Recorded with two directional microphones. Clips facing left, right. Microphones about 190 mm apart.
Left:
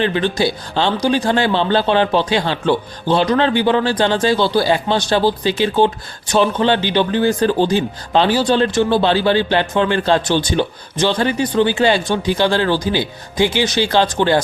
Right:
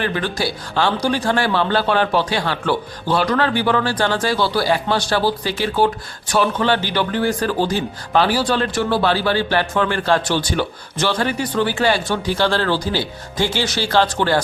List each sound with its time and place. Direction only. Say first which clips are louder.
0.0 s speech: left 5 dB; 20° left (ahead or behind)